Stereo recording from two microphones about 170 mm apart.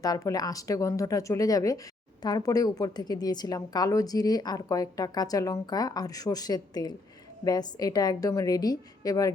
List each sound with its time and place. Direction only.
0.0 s speech: 20° left (ahead or behind)